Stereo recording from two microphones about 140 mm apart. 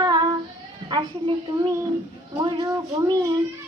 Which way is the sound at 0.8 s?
35° right (ahead or behind).